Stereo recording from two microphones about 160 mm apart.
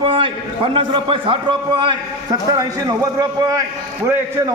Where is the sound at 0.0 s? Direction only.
35° right (ahead or behind).